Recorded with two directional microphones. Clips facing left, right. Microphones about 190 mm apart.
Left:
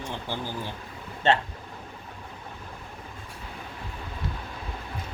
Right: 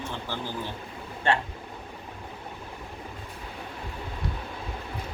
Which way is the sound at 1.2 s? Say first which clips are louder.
Left 3 dB; 25° left (ahead or behind).